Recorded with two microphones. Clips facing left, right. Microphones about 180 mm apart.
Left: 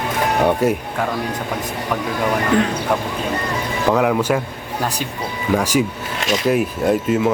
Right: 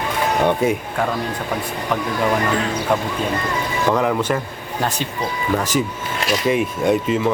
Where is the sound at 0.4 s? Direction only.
5° left (ahead or behind).